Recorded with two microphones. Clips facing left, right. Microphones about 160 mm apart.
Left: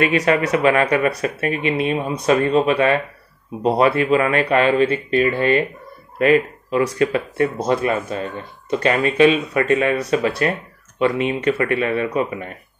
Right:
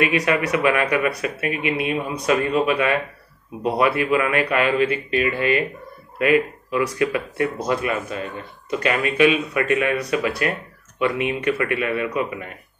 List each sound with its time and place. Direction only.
0.0 s speech: 30° left (ahead or behind)
6.7 s speech: 30° left (ahead or behind)